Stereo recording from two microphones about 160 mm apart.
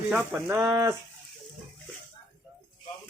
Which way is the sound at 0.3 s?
10° right (ahead or behind).